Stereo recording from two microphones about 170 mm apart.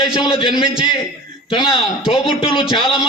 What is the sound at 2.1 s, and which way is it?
Speech, 35° left (ahead or behind).